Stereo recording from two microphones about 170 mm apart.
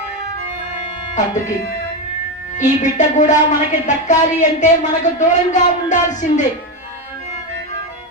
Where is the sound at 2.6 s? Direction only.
45° left (ahead or behind).